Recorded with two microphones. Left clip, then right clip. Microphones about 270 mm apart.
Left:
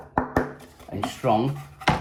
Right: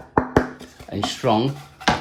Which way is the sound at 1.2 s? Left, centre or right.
Right.